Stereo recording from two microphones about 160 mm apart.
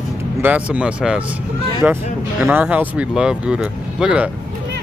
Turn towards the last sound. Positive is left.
turn(degrees=-5)  # may be behind; listen again after turning